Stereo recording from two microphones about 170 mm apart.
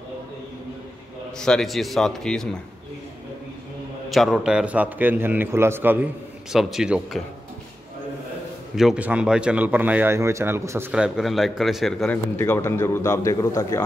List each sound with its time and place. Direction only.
1.4 s speech: 5° left (ahead or behind)
4.1 s speech: centre (ahead or behind)
8.7 s speech: 5° right (ahead or behind)
10.9 s speech: 5° right (ahead or behind)
12.4 s speech: 15° left (ahead or behind)